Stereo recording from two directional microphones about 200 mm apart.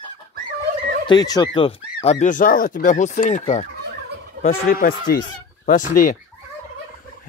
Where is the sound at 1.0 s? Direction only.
20° left (ahead or behind); by 3.6 s 35° left (ahead or behind).